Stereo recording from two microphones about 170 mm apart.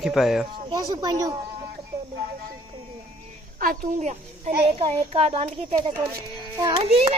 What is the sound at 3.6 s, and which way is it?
Speech, 50° right (ahead or behind).